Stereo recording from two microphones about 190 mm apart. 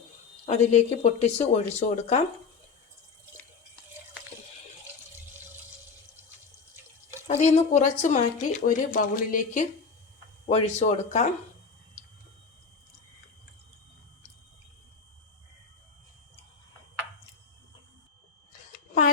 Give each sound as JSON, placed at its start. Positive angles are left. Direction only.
{"t": 0.4, "sound": "speech", "side_deg": 35}
{"t": 7.3, "sound": "speech", "side_deg": 35}